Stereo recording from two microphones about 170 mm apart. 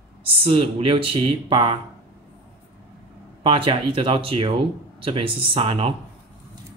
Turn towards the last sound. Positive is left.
turn(degrees=-30)  # may be behind; listen again after turning